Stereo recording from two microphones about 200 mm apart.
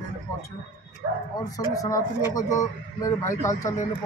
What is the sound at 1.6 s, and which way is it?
Speech, 15° left (ahead or behind).